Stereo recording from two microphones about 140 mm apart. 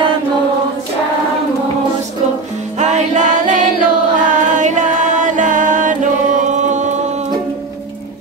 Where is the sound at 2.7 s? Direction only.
55° right (ahead or behind).